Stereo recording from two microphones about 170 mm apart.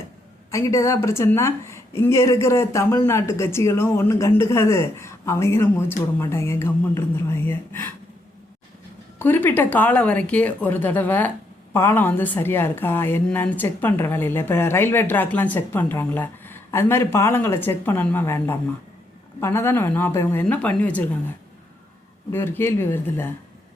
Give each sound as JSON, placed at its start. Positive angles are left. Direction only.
{"t": 0.5, "sound": "a woman's voice", "side_deg": 15}
{"t": 9.1, "sound": "a woman's voice", "side_deg": 10}
{"t": 22.3, "sound": "a woman's voice", "side_deg": 15}